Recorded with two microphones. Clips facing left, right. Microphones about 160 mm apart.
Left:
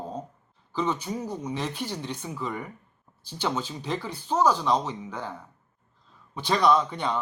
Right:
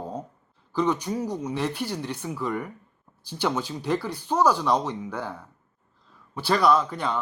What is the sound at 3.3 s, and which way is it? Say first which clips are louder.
Speech: right 3 dB; 10° right (ahead or behind).